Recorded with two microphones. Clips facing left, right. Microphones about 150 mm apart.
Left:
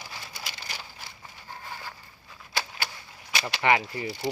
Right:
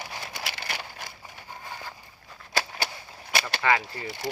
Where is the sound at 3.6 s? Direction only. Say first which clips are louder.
Left 3 dB; 20° left (ahead or behind).